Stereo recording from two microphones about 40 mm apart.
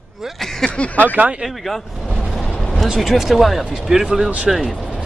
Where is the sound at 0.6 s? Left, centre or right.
Left.